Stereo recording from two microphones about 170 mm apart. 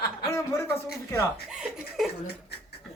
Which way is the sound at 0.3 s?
15° left (ahead or behind).